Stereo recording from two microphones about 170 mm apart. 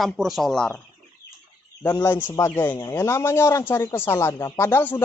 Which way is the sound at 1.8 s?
15° left (ahead or behind).